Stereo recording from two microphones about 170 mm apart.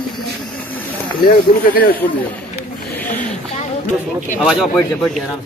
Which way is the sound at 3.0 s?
10° left (ahead or behind).